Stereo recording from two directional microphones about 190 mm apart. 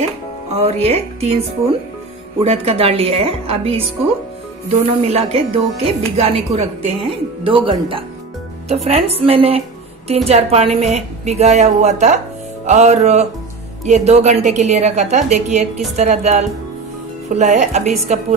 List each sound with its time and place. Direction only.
0.7 s speech: 35° right (ahead or behind)
2.4 s speech: 30° right (ahead or behind)